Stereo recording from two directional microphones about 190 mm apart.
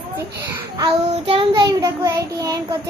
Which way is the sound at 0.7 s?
25° right (ahead or behind).